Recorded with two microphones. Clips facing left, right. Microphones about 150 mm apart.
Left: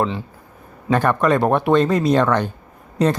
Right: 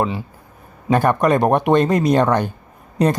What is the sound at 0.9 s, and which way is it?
Speech, 15° right (ahead or behind).